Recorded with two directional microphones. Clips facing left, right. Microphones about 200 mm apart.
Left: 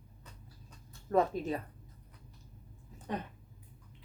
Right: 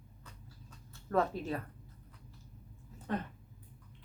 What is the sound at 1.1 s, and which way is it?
Speech, 15° left (ahead or behind).